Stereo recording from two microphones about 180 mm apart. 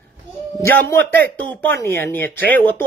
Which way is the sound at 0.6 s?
15° left (ahead or behind).